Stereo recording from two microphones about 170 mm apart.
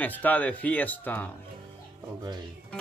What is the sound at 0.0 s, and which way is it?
Speech, 10° left (ahead or behind).